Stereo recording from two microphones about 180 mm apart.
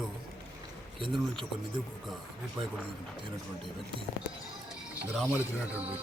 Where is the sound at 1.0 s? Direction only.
30° right (ahead or behind).